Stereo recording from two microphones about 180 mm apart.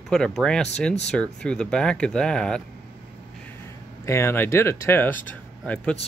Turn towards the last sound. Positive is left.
turn(degrees=10)  # may be behind; listen again after turning